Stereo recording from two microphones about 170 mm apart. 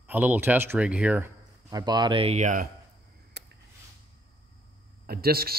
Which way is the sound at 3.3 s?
80° right.